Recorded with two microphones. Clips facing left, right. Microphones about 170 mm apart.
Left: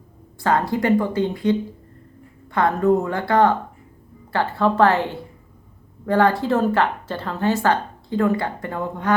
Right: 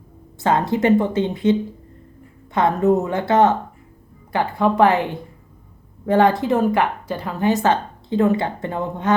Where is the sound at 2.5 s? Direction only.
20° right (ahead or behind).